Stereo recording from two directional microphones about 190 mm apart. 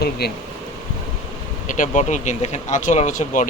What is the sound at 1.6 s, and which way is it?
Speech, 45° left (ahead or behind).